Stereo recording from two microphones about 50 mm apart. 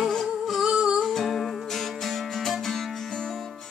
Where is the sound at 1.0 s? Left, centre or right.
Centre.